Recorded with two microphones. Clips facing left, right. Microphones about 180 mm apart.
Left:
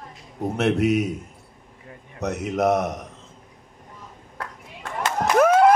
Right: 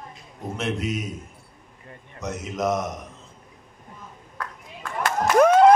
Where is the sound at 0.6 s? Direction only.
65° left (ahead or behind).